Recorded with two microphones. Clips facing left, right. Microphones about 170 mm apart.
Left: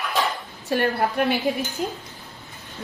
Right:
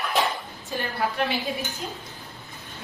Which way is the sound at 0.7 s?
60° left (ahead or behind).